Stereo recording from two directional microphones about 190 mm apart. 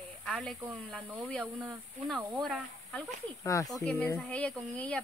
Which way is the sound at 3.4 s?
15° left (ahead or behind).